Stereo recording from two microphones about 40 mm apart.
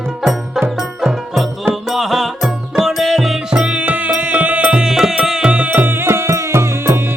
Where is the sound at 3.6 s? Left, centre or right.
Right.